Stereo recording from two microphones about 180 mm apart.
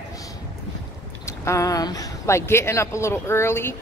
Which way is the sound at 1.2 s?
15° left (ahead or behind).